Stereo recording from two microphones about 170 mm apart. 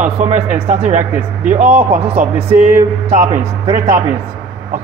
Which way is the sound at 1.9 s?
35° right (ahead or behind).